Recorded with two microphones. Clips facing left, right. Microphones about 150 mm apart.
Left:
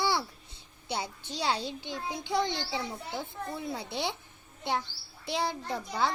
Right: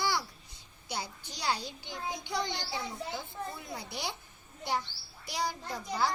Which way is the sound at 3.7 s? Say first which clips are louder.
Left 5 dB; 25° left (ahead or behind).